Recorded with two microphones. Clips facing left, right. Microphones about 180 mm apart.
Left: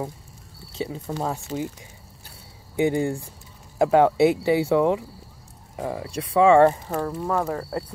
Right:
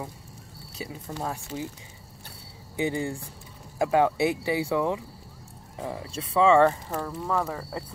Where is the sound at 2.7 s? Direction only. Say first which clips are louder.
Left 6 dB; 20° left (ahead or behind).